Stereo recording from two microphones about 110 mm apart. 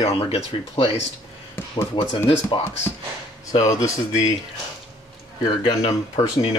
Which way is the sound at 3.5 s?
35° left (ahead or behind).